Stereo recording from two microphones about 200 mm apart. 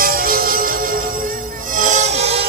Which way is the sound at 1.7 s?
35° right (ahead or behind).